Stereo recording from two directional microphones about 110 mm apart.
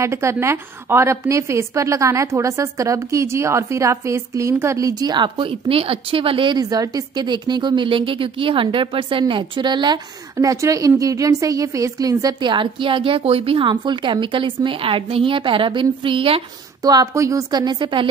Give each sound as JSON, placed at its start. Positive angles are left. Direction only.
{"t": 0.0, "sound": "a woman's voice", "side_deg": -25}
{"t": 6.6, "sound": "a woman's voice", "side_deg": -35}
{"t": 10.3, "sound": "a woman's voice", "side_deg": -30}
{"t": 16.8, "sound": "a woman's voice", "side_deg": -35}